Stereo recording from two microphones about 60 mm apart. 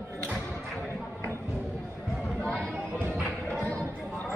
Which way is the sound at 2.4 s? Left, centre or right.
Centre.